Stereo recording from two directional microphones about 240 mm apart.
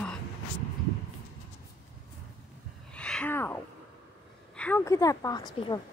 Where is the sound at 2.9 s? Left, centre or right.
Centre.